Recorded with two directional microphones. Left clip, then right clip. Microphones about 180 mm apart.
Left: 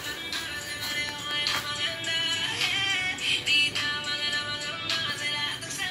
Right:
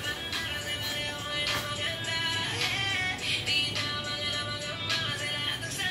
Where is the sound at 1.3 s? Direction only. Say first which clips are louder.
Left 3 dB; 60° left (ahead or behind).